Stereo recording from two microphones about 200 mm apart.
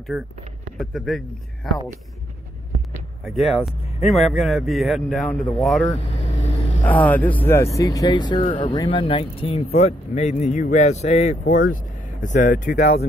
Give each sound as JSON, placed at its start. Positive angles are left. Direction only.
{"t": 0.7, "sound": "a man's voice", "side_deg": 0}
{"t": 3.3, "sound": "a man's voice", "side_deg": 0}
{"t": 5.9, "sound": "vehicle", "side_deg": 30}
{"t": 6.8, "sound": "speech", "side_deg": 10}
{"t": 12.6, "sound": "speech", "side_deg": 55}